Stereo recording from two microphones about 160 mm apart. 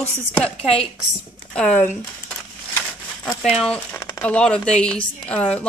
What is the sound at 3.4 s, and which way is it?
A woman's voice, centre (ahead or behind).